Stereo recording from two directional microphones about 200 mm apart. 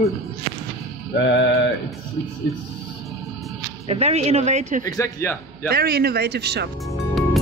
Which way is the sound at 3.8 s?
30° right (ahead or behind).